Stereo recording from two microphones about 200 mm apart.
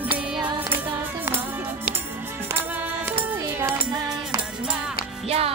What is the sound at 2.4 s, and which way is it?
Music, 10° right (ahead or behind).